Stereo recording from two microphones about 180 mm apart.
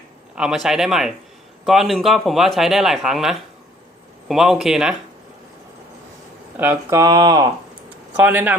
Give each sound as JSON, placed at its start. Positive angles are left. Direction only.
{"t": 0.3, "sound": "speech", "side_deg": -5}
{"t": 6.6, "sound": "speech", "side_deg": -15}